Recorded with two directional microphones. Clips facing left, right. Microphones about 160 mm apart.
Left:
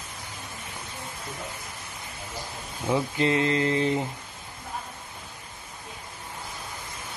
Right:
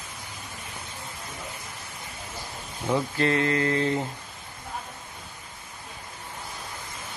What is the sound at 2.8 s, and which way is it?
Speech, 15° left (ahead or behind).